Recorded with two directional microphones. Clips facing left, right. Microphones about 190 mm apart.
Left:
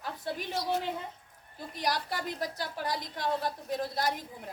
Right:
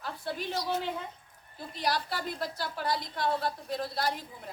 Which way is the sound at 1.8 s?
15° left (ahead or behind).